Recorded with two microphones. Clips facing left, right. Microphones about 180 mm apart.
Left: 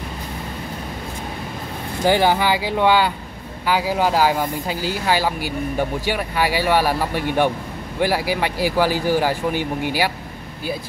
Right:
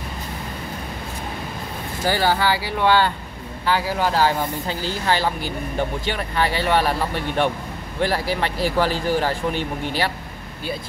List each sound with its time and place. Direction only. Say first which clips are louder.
2.0 s speech: left 3 dB; 15° left (ahead or behind)